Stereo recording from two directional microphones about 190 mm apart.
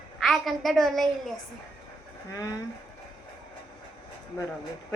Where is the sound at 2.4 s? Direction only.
20° left (ahead or behind).